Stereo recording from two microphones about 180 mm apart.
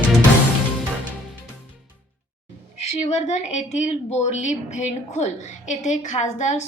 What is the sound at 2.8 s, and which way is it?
A woman's voice, 40° left (ahead or behind).